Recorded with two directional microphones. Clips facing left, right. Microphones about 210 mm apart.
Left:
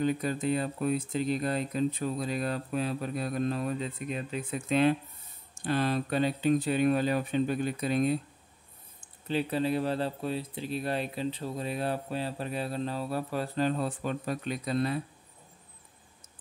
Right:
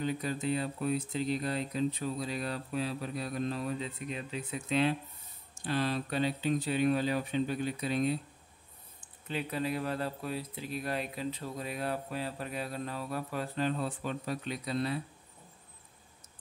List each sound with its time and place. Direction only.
0.0 s speech: 50° left (ahead or behind)
9.3 s speech: 30° left (ahead or behind); by 15.0 s 50° left (ahead or behind)